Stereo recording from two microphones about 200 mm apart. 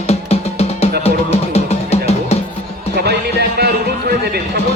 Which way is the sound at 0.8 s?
30° left (ahead or behind).